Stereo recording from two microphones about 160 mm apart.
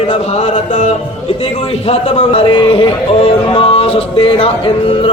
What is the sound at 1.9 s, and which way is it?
Music, 40° left (ahead or behind).